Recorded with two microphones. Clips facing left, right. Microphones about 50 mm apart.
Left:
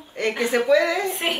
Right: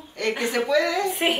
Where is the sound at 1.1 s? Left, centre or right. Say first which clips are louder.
Right 2 dB; centre.